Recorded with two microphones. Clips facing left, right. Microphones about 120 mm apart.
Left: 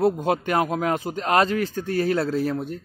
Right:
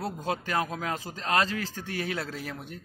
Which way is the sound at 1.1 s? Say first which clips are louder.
Left 6 dB; 25° left (ahead or behind).